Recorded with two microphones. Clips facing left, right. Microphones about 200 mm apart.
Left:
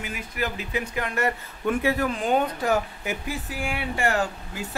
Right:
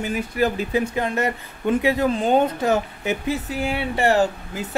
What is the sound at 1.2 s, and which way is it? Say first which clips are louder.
Speech: right 2 dB; 20° right (ahead or behind).